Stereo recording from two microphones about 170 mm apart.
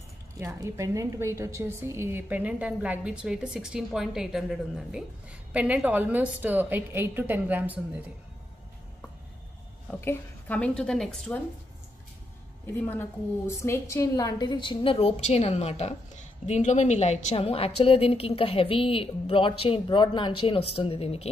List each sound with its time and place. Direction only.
0.4 s a woman's voice: 20° right (ahead or behind)
9.8 s a woman's voice: 10° left (ahead or behind)
12.8 s a woman's voice: 15° left (ahead or behind); by 21.3 s 35° left (ahead or behind)